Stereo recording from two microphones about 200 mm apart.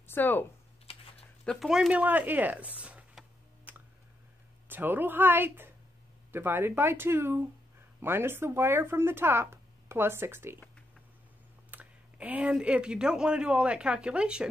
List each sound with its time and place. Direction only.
0.0 s speech: 10° left (ahead or behind)
0.9 s typing: 30° left (ahead or behind)
1.4 s speech: centre (ahead or behind)
11.7 s speech: 5° right (ahead or behind)